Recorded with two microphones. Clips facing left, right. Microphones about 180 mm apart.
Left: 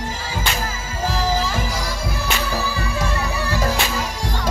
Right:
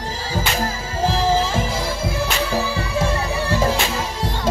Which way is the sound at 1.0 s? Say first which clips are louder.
Right 3 dB; 30° right (ahead or behind).